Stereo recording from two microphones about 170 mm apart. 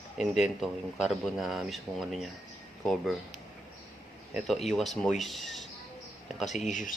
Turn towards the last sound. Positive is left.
turn(degrees=50)  # may be behind; listen again after turning